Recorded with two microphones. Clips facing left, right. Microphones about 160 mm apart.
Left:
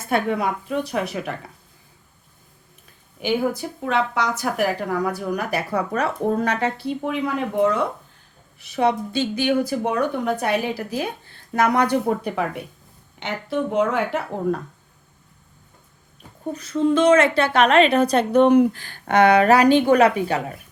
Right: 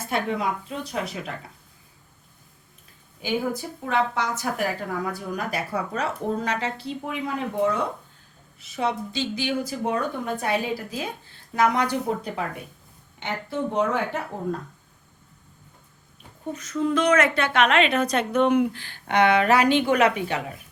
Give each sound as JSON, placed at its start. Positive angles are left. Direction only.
{"t": 0.1, "sound": "speech", "side_deg": 60}
{"t": 3.8, "sound": "a woman's voice", "side_deg": 90}
{"t": 8.6, "sound": "speech", "side_deg": 65}
{"t": 13.1, "sound": "speech", "side_deg": 85}
{"t": 16.5, "sound": "a woman's voice", "side_deg": 35}